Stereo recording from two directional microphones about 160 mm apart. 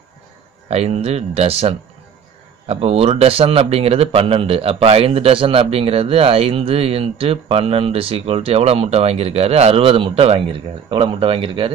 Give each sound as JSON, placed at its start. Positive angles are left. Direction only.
{"t": 0.7, "sound": "speech", "side_deg": -40}